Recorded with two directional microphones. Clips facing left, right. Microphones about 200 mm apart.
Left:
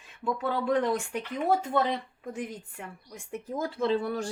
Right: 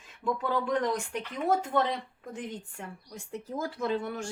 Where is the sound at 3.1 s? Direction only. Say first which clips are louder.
Left 2 dB; 20° left (ahead or behind).